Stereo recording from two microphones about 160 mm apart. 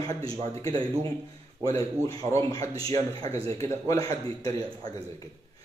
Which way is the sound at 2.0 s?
20° left (ahead or behind).